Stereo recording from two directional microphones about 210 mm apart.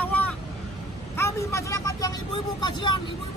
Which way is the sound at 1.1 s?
15° left (ahead or behind).